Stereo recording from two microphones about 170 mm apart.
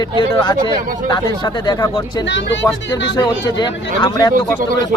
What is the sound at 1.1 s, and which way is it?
A man's voice, 25° left (ahead or behind).